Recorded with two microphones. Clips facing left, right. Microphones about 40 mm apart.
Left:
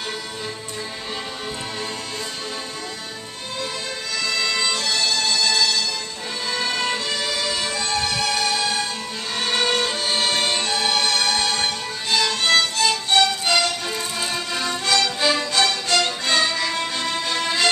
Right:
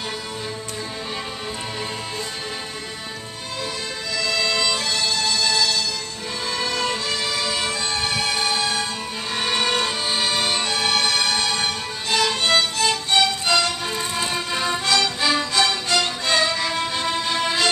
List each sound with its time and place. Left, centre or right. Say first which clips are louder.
4.4 s music: right 1 dB; centre
4.7 s music: left 1 dB; centre
5.5 s music: left 1 dB; centre
6.7 s music: even; centre
7.2 s music: even; centre
9.3 s music: even; centre